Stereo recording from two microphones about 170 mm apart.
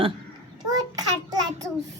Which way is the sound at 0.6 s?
20° right (ahead or behind).